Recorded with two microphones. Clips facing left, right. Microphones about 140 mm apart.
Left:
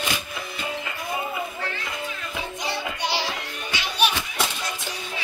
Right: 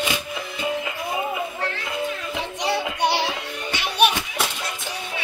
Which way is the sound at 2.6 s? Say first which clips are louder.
Right 7 dB; 60° right (ahead or behind).